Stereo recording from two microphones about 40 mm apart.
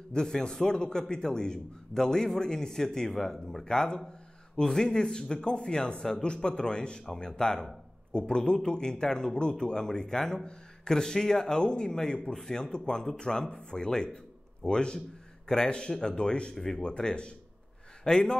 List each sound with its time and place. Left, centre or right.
0.1 s a man's voice: centre
16.5 s a man's voice: centre
16.8 s a man's voice: left